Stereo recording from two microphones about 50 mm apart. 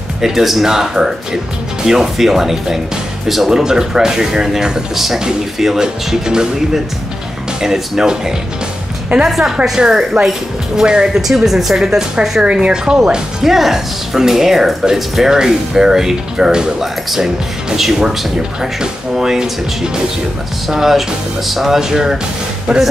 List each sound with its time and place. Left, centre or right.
0.2 s speech: centre
9.1 s a woman's voice: right
9.8 s speech: centre
11.1 s speech: centre